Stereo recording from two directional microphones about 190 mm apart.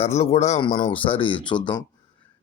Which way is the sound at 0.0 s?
35° left (ahead or behind).